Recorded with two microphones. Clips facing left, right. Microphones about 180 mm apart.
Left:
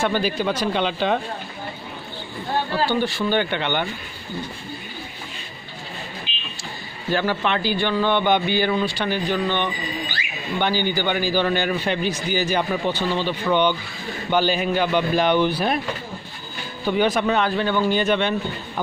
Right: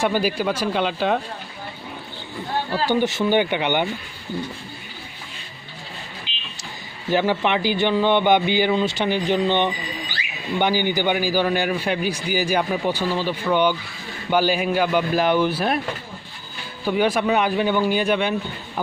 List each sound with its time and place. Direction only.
0.0 s a man's voice: 10° right (ahead or behind)
2.9 s a man's voice: 15° right (ahead or behind)
7.1 s a man's voice: 15° right (ahead or behind)
16.8 s a man's voice: 5° right (ahead or behind)